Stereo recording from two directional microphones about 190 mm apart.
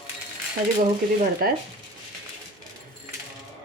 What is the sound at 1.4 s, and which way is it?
Speech, 50° right (ahead or behind).